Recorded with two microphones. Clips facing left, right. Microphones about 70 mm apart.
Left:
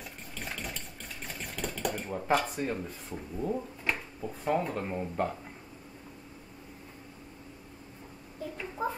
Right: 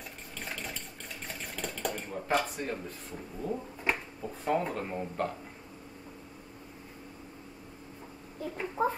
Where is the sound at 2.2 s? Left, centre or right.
Centre.